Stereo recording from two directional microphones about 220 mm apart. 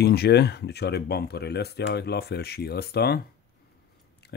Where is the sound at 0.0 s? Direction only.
45° left (ahead or behind).